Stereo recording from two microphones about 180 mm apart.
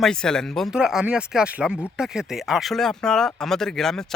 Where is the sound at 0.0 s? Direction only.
5° left (ahead or behind).